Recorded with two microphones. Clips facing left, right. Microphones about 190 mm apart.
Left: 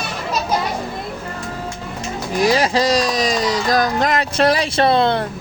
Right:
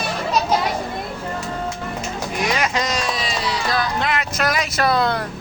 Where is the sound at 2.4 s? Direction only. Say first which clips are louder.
Left 7 dB; 35° left (ahead or behind).